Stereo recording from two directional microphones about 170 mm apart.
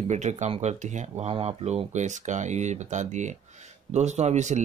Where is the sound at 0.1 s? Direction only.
45° right (ahead or behind).